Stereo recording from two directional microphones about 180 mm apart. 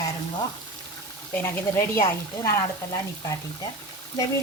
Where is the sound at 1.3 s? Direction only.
10° left (ahead or behind).